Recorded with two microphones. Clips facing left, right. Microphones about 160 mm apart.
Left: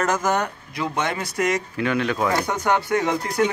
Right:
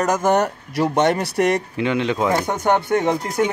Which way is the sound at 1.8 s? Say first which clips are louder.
Right 2 dB; 20° right (ahead or behind).